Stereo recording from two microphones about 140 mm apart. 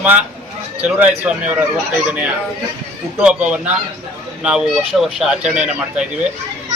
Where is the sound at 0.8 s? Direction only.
10° right (ahead or behind).